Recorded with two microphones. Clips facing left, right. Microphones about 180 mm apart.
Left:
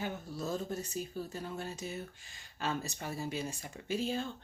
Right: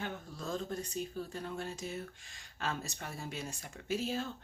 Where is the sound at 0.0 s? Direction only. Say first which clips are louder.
Left 3 dB; 5° left (ahead or behind).